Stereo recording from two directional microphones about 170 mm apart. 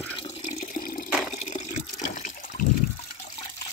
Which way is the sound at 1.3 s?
45° left (ahead or behind).